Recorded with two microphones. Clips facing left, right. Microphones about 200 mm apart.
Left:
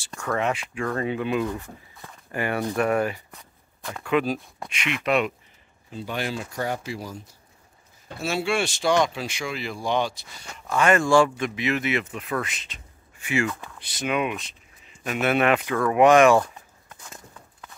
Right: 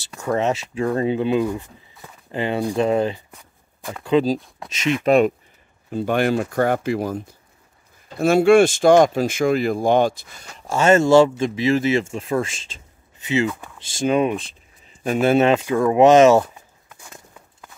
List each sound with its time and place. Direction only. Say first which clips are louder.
0.2 s a man's voice: right 5 dB; 25° right (ahead or behind)
1.4 s a man's voice: right 5 dB; 15° right (ahead or behind); by 5.3 s 40° right (ahead or behind)
5.9 s speech: right 10 dB; 55° right (ahead or behind)
10.6 s a man's voice: right 5 dB; 25° right (ahead or behind)
13.9 s a man's voice: right 7 dB; 30° right (ahead or behind)